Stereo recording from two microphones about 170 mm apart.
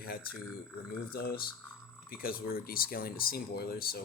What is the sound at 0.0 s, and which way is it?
Speech, 60° left (ahead or behind).